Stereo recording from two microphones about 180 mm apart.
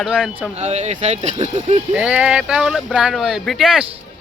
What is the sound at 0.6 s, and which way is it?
Speech, 40° right (ahead or behind).